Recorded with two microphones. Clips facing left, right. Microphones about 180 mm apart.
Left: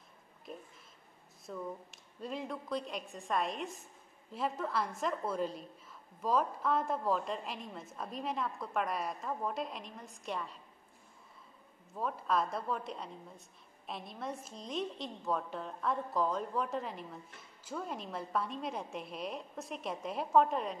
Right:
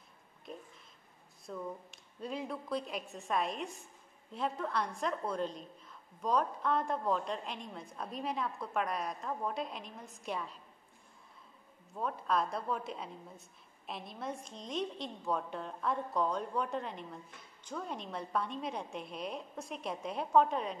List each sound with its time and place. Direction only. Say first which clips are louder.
0.5 s a sound: even; 5° left (ahead or behind)
1.4 s a woman's voice: even; centre (ahead or behind)
11.9 s a woman's voice: even; centre (ahead or behind)